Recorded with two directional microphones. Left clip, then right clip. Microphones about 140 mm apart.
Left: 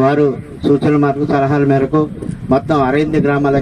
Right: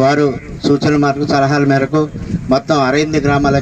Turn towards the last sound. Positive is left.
turn(degrees=-40)  # may be behind; listen again after turning